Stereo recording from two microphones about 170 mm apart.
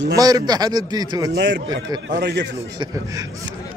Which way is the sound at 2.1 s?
90° right.